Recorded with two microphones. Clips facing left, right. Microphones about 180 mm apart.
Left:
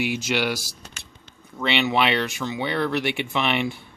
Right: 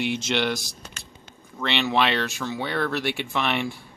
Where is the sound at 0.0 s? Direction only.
5° left (ahead or behind).